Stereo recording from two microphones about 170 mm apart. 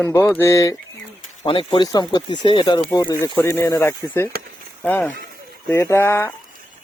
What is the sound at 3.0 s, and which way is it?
Speech, 15° left (ahead or behind).